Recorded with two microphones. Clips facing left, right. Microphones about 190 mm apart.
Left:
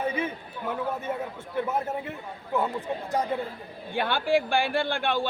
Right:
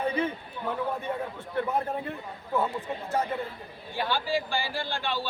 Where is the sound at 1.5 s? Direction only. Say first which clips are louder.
Even; 5° left (ahead or behind).